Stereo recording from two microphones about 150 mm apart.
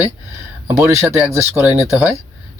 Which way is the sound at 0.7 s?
20° right (ahead or behind).